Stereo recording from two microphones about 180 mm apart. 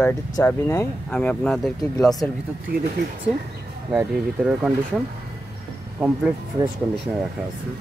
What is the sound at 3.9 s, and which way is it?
Speech, 5° right (ahead or behind).